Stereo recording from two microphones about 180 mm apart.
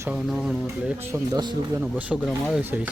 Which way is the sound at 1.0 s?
10° right (ahead or behind).